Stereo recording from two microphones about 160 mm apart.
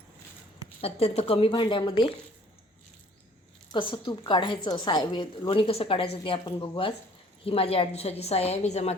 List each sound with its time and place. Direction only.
0.8 s a woman's voice: 40° left (ahead or behind)
3.7 s a woman's voice: 30° left (ahead or behind)